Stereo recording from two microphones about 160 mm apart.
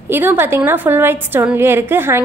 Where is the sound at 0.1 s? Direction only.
10° right (ahead or behind).